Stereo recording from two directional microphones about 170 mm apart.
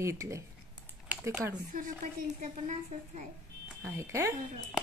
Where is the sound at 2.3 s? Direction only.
45° right (ahead or behind).